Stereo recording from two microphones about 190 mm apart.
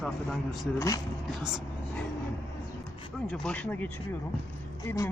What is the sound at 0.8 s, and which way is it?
Speech, 15° left (ahead or behind).